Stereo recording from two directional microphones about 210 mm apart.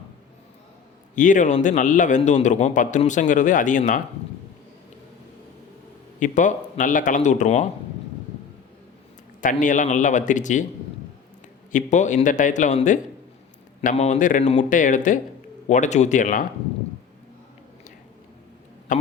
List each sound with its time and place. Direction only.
1.1 s a man's voice: 35° left (ahead or behind)
6.1 s a man's voice: 35° left (ahead or behind)
9.4 s a man's voice: 35° left (ahead or behind)
11.7 s a man's voice: 35° left (ahead or behind)